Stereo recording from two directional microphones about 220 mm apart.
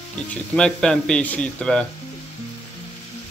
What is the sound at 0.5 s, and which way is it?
A man's voice, 5° left (ahead or behind).